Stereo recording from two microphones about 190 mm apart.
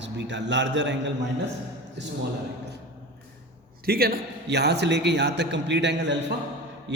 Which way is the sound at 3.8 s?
55° right (ahead or behind).